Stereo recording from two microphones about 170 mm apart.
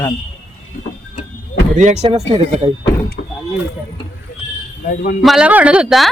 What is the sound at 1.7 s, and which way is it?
Speech, 45° right (ahead or behind).